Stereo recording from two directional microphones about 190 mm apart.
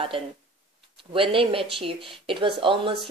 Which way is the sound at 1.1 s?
30° right (ahead or behind).